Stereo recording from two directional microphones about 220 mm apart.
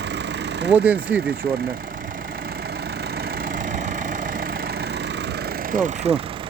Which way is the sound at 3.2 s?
40° right (ahead or behind).